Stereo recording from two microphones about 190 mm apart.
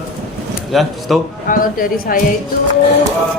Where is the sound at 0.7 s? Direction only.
Centre (ahead or behind).